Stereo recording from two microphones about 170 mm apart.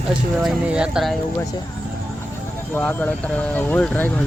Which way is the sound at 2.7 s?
10° left (ahead or behind).